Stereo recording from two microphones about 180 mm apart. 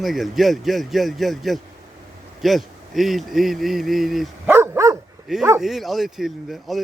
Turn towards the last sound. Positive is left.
turn(degrees=0)  # may be behind; listen again after turning